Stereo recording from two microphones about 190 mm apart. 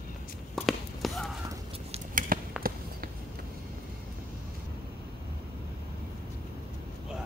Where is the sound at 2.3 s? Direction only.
45° right (ahead or behind).